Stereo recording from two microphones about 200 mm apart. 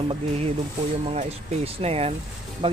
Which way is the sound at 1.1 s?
30° right (ahead or behind).